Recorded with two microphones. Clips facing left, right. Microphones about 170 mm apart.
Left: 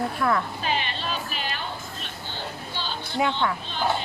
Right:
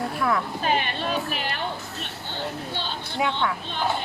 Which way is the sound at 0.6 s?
50° right (ahead or behind).